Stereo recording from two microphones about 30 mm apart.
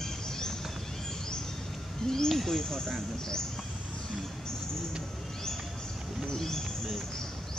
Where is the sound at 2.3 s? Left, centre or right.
Centre.